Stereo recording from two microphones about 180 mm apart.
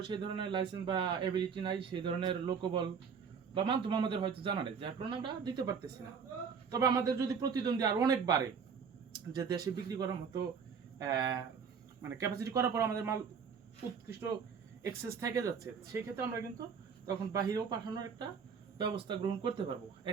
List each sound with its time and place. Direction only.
0.1 s speech: 25° right (ahead or behind)
14.8 s speech: 20° right (ahead or behind)